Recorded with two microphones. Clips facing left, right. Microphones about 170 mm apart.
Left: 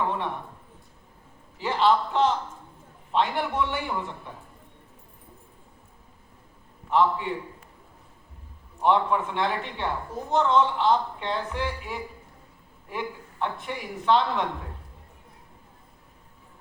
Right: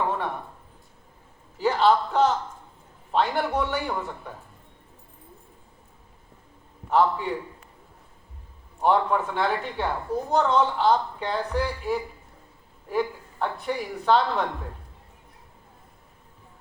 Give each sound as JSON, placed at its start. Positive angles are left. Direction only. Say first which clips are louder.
{"t": 1.5, "sound": "a man's voice", "louder": "right 2 dB", "side_deg": -40}
{"t": 6.9, "sound": "speech", "louder": "right 1 dB", "side_deg": -40}
{"t": 8.8, "sound": "speech", "louder": "right 1 dB", "side_deg": -40}
{"t": 12.9, "sound": "speech", "louder": "right 7 dB", "side_deg": -40}